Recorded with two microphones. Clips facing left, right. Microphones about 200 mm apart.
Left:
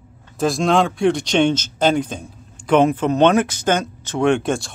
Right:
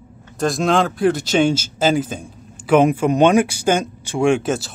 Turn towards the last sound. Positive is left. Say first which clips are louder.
# right 1 dB
turn(degrees=-5)  # may be behind; listen again after turning